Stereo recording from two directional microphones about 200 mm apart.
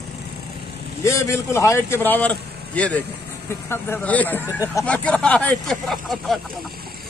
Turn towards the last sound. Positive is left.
turn(degrees=0)  # may be behind; listen again after turning